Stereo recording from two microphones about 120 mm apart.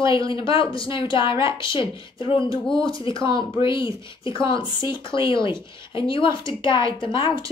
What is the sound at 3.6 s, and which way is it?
Speech, 45° left (ahead or behind).